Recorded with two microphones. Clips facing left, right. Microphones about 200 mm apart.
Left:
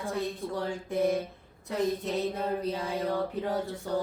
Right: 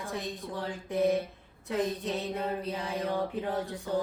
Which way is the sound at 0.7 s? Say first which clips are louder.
Right 1 dB; 15° right (ahead or behind).